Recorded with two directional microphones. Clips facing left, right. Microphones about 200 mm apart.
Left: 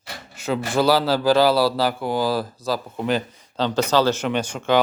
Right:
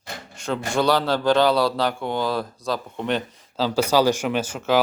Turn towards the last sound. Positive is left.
turn(degrees=-5)  # may be behind; listen again after turning